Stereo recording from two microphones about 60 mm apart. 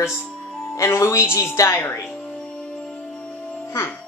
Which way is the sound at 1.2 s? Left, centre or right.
Left.